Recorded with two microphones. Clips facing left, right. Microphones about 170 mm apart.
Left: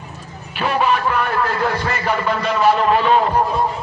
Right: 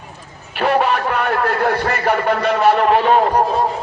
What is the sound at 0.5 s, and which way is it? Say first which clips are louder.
A man's voice: right 2 dB; 65° right (ahead or behind).